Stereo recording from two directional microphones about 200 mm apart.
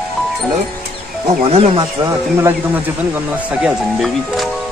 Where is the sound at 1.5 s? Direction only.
30° right (ahead or behind).